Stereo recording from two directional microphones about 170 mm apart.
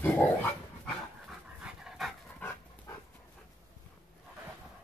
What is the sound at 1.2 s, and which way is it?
Dog, 5° right (ahead or behind).